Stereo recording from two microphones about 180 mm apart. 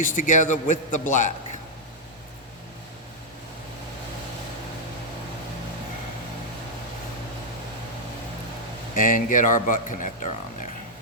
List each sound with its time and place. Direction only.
0.2 s a man's voice: 45° left (ahead or behind)
9.0 s a man's voice: 50° left (ahead or behind)